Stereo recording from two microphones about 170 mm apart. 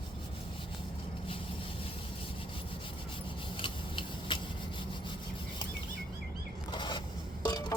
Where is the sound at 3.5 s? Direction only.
30° left (ahead or behind).